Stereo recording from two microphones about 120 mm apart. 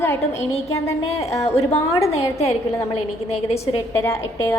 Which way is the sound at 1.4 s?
60° left (ahead or behind).